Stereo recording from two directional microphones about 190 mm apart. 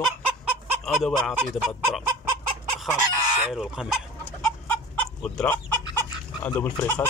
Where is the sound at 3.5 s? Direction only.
Centre (ahead or behind).